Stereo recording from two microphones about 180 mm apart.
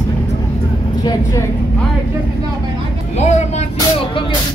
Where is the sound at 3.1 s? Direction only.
40° left (ahead or behind).